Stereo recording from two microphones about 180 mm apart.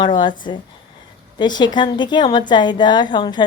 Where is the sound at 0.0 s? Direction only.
25° left (ahead or behind).